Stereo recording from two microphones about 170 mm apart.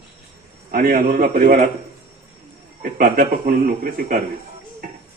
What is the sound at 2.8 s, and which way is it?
Speech, 55° right (ahead or behind).